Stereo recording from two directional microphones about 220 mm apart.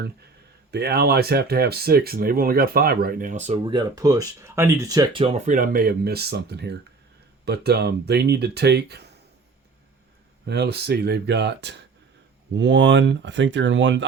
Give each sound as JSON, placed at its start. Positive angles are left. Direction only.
{"t": 0.7, "sound": "speech", "side_deg": -45}
{"t": 3.8, "sound": "speech", "side_deg": -15}
{"t": 10.4, "sound": "speech", "side_deg": -50}